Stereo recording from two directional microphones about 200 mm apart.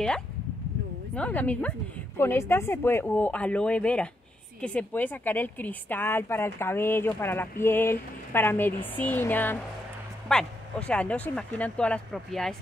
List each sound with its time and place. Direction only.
1.1 s a woman's voice: 5° left (ahead or behind)